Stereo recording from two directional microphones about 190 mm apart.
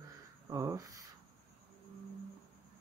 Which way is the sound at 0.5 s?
15° right (ahead or behind).